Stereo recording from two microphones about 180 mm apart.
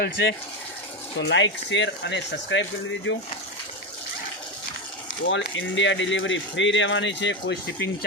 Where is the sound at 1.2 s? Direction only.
90° left.